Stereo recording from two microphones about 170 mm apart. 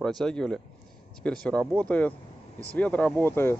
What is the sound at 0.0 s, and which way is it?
Speech, 5° left (ahead or behind).